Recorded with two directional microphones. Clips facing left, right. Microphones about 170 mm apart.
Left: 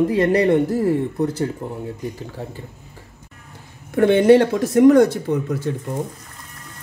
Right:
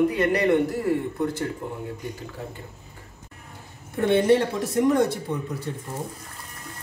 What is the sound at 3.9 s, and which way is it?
Speech, 90° left.